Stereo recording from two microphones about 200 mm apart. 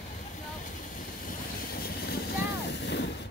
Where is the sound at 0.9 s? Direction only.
45° left (ahead or behind).